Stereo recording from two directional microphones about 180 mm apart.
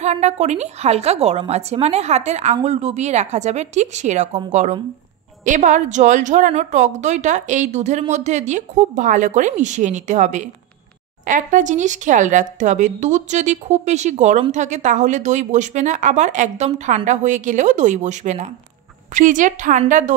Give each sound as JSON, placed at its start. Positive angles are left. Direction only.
{"t": 0.0, "sound": "a woman's voice", "side_deg": -40}